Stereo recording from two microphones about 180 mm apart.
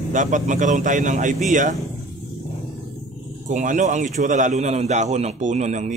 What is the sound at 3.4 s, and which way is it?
A man's voice, 45° right (ahead or behind).